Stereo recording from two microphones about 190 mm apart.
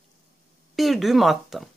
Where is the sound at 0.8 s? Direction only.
Centre (ahead or behind).